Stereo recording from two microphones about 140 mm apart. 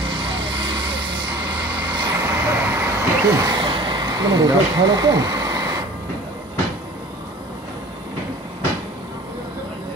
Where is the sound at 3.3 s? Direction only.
30° right (ahead or behind).